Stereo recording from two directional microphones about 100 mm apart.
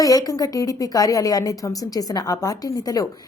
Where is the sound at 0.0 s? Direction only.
40° left (ahead or behind).